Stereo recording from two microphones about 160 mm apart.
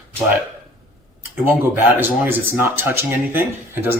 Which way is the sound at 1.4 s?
15° right (ahead or behind).